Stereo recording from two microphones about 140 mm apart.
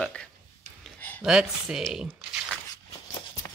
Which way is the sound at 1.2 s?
5° right (ahead or behind).